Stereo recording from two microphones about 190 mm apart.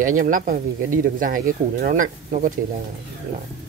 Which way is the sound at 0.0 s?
45° right (ahead or behind).